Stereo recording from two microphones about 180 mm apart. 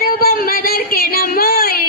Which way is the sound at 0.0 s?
55° left (ahead or behind).